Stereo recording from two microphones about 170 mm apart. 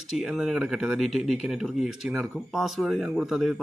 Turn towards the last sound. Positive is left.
turn(degrees=0)  # may be behind; listen again after turning